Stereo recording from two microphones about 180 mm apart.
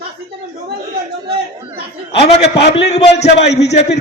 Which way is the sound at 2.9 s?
40° left (ahead or behind).